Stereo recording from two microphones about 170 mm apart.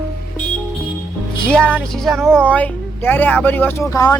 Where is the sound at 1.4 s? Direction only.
5° left (ahead or behind).